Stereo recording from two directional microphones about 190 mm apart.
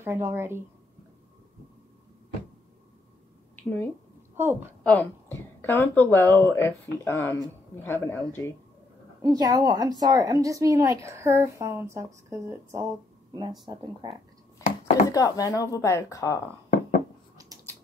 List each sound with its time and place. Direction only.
0.0 s speech: 10° right (ahead or behind)
3.5 s speech: 10° left (ahead or behind)
4.4 s speech: 10° right (ahead or behind)
4.8 s speech: 10° left (ahead or behind)
9.2 s speech: 20° right (ahead or behind)
15.0 s speech: 20° left (ahead or behind)
17.4 s a sound: 15° right (ahead or behind)